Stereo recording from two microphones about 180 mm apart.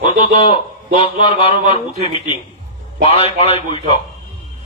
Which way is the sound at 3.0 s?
30° left (ahead or behind).